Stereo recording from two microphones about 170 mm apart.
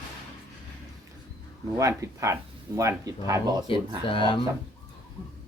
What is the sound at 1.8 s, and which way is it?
A woman's voice, 20° right (ahead or behind).